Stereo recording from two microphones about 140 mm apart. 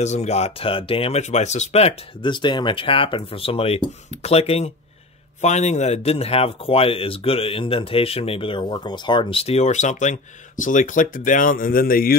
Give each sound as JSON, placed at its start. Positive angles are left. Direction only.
{"t": 0.0, "sound": "speech", "side_deg": 55}
{"t": 2.3, "sound": "speech", "side_deg": 35}